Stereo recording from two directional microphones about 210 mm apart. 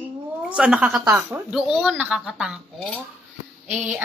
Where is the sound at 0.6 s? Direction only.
5° right (ahead or behind).